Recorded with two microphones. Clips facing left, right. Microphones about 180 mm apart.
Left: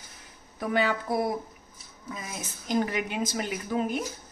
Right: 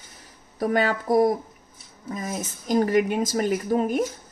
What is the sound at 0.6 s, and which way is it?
A woman's voice, 45° right (ahead or behind).